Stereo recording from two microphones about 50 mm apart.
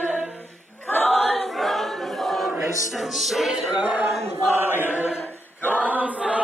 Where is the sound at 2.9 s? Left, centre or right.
Centre.